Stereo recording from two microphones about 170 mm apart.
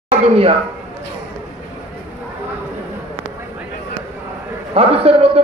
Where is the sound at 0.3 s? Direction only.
35° right (ahead or behind).